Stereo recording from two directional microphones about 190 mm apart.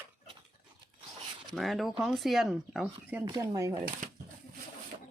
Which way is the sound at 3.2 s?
25° right (ahead or behind).